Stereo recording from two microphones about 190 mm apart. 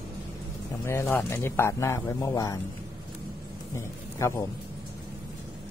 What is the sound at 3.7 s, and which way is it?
Speech, 15° left (ahead or behind).